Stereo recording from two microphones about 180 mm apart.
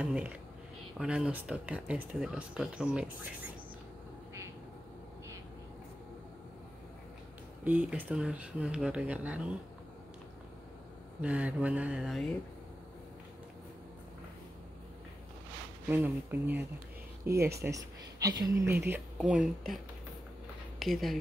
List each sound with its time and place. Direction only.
0.0 s speech: 5° right (ahead or behind)
7.6 s speech: 5° right (ahead or behind)
11.1 s speech: 5° right (ahead or behind)
15.9 s speech: 10° right (ahead or behind)
20.8 s speech: centre (ahead or behind)